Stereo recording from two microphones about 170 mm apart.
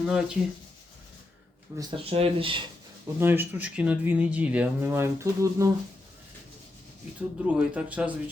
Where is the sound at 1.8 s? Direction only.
30° right (ahead or behind).